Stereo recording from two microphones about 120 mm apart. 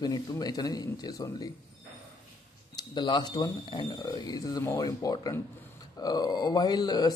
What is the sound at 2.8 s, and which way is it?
A man's voice, 40° left (ahead or behind).